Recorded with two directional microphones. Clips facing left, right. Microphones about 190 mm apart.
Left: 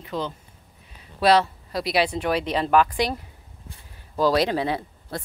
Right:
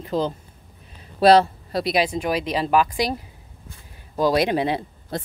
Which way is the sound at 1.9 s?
10° right (ahead or behind).